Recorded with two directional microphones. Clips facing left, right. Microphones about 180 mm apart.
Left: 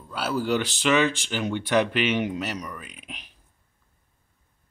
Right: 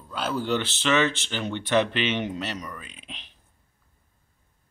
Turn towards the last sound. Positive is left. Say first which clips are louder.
# left 2 dB
turn(degrees=10)  # may be behind; listen again after turning